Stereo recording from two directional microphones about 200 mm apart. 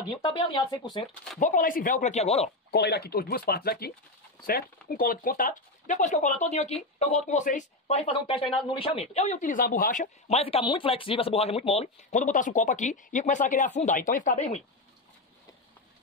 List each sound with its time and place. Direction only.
0.1 s speech: 20° left (ahead or behind)
1.4 s speech: 40° left (ahead or behind)
2.7 s speech: 55° left (ahead or behind); by 14.6 s 40° left (ahead or behind)